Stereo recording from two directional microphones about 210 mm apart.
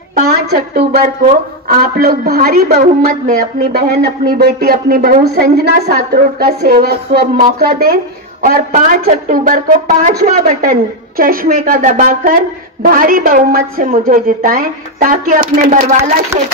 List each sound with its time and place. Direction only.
0.2 s a woman's voice: 45° right (ahead or behind)